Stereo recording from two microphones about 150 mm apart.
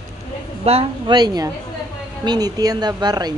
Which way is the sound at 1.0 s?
30° right (ahead or behind).